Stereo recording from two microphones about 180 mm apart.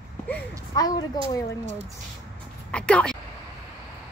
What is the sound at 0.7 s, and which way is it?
Speech, 20° left (ahead or behind).